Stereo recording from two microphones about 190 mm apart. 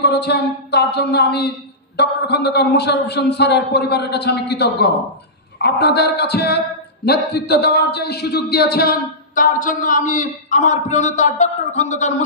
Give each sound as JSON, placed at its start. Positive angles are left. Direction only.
{"t": 0.0, "sound": "a man's voice", "side_deg": 60}